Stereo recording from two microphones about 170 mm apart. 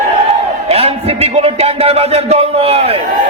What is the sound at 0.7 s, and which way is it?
Speech, 35° right (ahead or behind).